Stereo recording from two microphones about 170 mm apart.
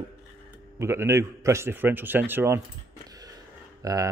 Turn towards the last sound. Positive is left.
turn(degrees=-20)  # may be behind; listen again after turning